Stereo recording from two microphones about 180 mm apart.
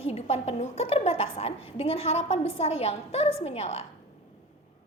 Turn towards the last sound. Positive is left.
turn(degrees=35)  # may be behind; listen again after turning